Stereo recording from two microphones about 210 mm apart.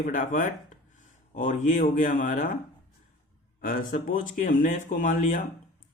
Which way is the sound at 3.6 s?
40° left (ahead or behind).